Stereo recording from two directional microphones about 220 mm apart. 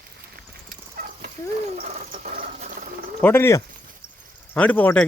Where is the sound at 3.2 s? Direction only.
10° left (ahead or behind).